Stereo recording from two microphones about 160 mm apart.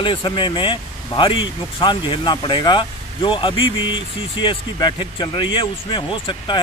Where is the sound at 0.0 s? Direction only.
30° left (ahead or behind).